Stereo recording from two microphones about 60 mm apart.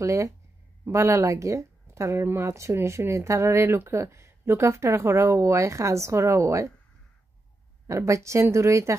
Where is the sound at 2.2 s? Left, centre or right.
Right.